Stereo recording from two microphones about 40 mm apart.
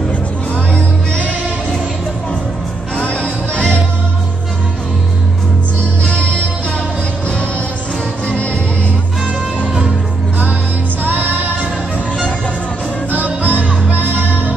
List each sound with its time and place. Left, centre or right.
3.0 s music: left
8.3 s music: left
11.1 s music: right
13.1 s music: right
13.9 s music: right